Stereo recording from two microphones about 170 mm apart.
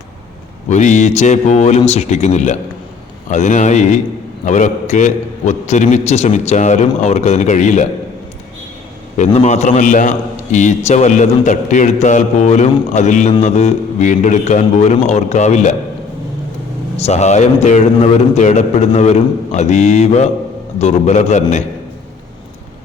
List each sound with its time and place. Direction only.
0.7 s a man's voice: 45° left (ahead or behind)
9.1 s a man's voice: 40° left (ahead or behind)
17.0 s a man's voice: 40° left (ahead or behind)